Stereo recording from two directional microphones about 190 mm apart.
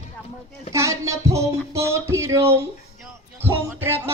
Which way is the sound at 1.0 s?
15° right (ahead or behind).